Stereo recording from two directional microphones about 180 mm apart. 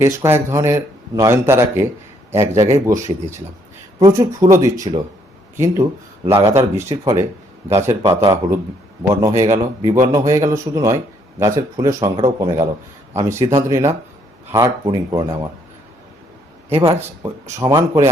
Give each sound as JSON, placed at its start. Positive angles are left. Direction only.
{"t": 0.0, "sound": "a man's voice", "side_deg": -15}
{"t": 16.6, "sound": "speech", "side_deg": -15}